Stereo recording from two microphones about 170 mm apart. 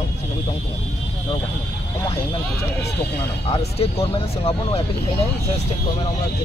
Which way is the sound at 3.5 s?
35° left (ahead or behind).